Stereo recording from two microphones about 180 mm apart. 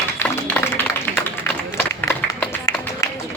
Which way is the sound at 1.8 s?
10° left (ahead or behind).